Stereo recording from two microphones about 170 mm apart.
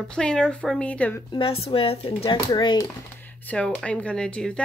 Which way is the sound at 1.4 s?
35° left (ahead or behind).